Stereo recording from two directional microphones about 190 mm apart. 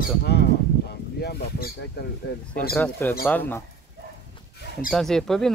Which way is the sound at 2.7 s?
10° left (ahead or behind).